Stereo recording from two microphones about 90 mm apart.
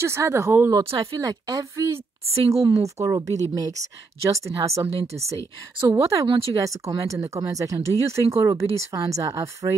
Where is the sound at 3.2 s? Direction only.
40° right (ahead or behind).